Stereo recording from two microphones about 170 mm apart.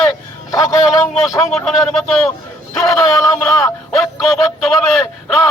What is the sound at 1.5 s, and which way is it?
Speech, centre (ahead or behind).